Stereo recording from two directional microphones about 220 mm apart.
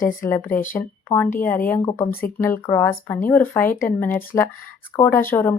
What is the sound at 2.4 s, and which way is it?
A woman's voice, 10° left (ahead or behind).